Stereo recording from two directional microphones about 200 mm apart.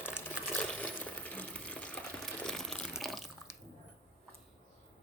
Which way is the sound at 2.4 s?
Centre (ahead or behind).